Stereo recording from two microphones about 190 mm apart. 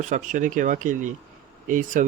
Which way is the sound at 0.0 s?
40° right (ahead or behind).